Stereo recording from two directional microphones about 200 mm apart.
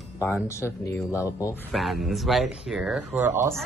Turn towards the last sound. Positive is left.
turn(degrees=-15)  # may be behind; listen again after turning